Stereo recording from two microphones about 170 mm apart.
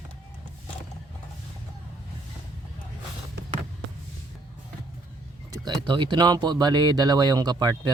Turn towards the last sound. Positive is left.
turn(degrees=-25)  # may be behind; listen again after turning